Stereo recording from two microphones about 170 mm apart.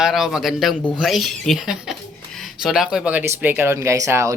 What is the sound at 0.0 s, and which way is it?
Speech, centre (ahead or behind).